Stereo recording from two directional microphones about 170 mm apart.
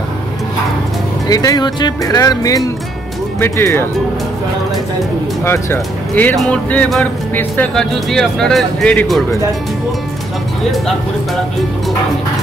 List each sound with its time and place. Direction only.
1.3 s speech: 20° left (ahead or behind)
5.4 s speech: 15° left (ahead or behind)
6.3 s music: 10° left (ahead or behind)